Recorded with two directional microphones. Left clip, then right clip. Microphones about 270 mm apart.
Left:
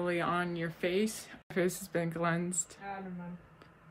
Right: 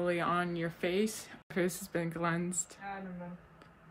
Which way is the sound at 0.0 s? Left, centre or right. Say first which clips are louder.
Even; centre.